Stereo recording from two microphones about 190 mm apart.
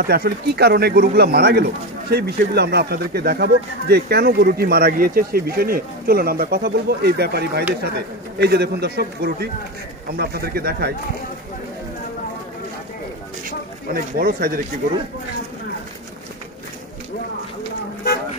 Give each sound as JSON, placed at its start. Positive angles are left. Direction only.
{"t": 0.0, "sound": "speech", "side_deg": -55}
{"t": 13.5, "sound": "speech", "side_deg": -50}